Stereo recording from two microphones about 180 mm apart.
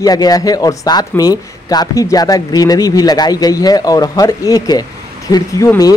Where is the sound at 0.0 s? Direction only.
20° left (ahead or behind).